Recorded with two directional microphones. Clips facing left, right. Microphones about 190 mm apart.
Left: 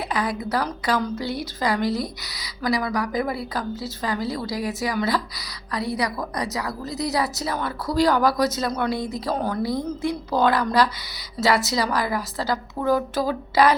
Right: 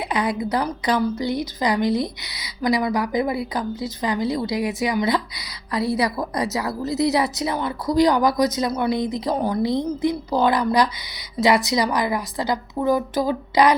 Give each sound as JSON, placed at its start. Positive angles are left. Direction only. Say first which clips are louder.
{"t": 0.1, "sound": "a woman's voice", "louder": "right 3 dB", "side_deg": -20}
{"t": 9.6, "sound": "a woman's voice", "louder": "right 4 dB", "side_deg": -20}